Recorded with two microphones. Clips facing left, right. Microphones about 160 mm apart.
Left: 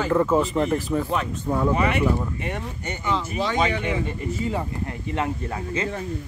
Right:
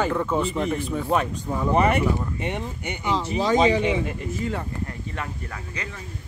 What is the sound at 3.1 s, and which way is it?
Speech, 30° right (ahead or behind).